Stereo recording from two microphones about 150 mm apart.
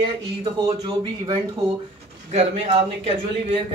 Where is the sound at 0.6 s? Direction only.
30° right (ahead or behind).